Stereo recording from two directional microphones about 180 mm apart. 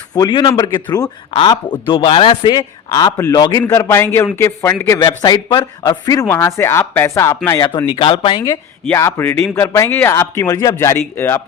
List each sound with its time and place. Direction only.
0.1 s a man's voice: 25° left (ahead or behind)
9.0 s speech: 15° left (ahead or behind)